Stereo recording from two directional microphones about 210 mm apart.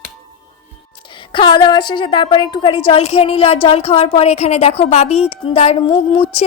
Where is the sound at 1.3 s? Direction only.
20° left (ahead or behind).